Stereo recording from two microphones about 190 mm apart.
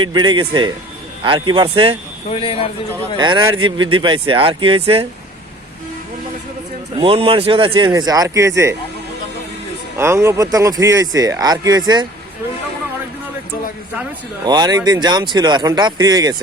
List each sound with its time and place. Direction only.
0.0 s speech: 25° right (ahead or behind)
2.3 s a man's voice: 30° left (ahead or behind)
3.2 s speech: 25° right (ahead or behind)
6.9 s speech: 30° right (ahead or behind)
10.0 s speech: 15° right (ahead or behind)
14.4 s speech: 20° right (ahead or behind)